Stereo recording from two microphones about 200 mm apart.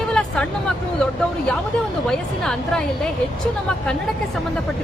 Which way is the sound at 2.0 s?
5° left (ahead or behind).